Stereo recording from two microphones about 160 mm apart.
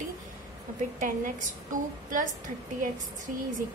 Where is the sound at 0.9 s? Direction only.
55° right (ahead or behind).